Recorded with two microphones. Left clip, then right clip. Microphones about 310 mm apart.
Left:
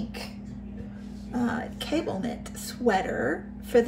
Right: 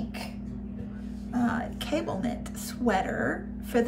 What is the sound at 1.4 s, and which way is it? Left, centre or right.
A woman's voice, centre.